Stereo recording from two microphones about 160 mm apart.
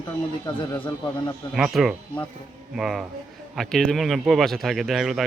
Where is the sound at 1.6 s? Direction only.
5° right (ahead or behind).